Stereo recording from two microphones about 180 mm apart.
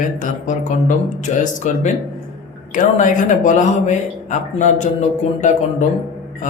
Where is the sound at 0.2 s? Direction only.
45° left (ahead or behind).